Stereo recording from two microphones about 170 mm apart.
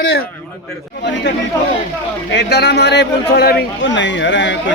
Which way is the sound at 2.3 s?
80° left.